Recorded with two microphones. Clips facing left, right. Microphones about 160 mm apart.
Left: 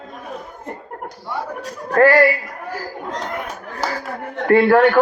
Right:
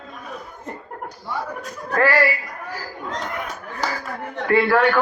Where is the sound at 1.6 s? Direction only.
40° left (ahead or behind).